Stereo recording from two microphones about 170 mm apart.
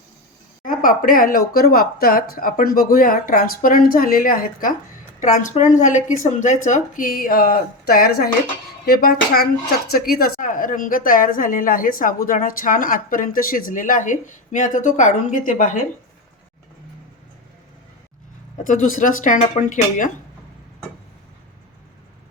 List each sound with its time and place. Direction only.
0.6 s speech: 55° left (ahead or behind)
18.6 s speech: 50° left (ahead or behind)